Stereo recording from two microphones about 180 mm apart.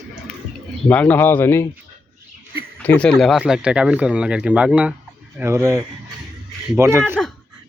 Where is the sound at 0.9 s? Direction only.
10° left (ahead or behind).